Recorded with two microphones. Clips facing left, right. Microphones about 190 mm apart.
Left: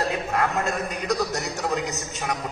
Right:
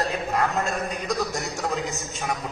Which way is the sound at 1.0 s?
Centre (ahead or behind).